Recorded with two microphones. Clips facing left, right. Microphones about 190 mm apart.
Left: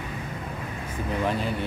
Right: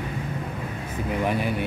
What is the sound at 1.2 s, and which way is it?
Speech, 15° right (ahead or behind).